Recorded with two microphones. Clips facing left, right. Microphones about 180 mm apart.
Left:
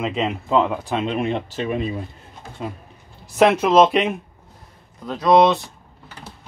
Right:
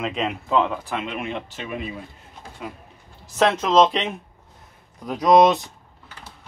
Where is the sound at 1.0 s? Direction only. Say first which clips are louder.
Left 7 dB; 35° left (ahead or behind).